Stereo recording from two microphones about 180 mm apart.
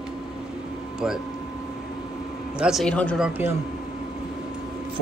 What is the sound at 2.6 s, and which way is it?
Speech, centre (ahead or behind).